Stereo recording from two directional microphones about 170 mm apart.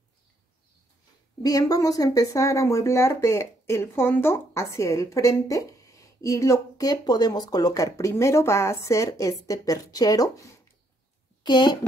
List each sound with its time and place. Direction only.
1.4 s speech: 20° left (ahead or behind)
11.4 s speech: 25° left (ahead or behind)